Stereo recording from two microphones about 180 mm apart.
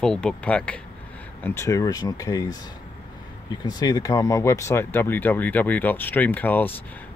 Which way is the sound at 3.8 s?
20° left (ahead or behind).